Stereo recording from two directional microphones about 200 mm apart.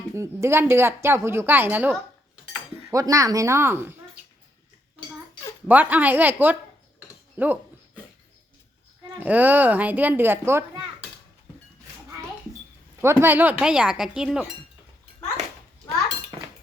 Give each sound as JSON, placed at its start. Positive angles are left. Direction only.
{"t": 0.1, "sound": "a woman's voice", "side_deg": -15}
{"t": 2.9, "sound": "a woman's voice", "side_deg": -15}
{"t": 4.9, "sound": "dishes", "side_deg": 20}
{"t": 5.6, "sound": "a woman's voice", "side_deg": -10}
{"t": 9.2, "sound": "a woman's voice", "side_deg": -10}
{"t": 13.0, "sound": "a woman's voice", "side_deg": -10}
{"t": 14.2, "sound": "chink", "side_deg": -5}
{"t": 15.9, "sound": "chink", "side_deg": 10}